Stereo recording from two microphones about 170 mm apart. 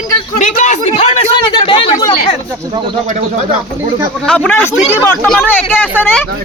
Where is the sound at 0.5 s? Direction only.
45° left (ahead or behind).